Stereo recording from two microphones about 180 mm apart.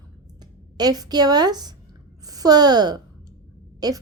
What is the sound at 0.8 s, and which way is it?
A woman's voice, 20° right (ahead or behind).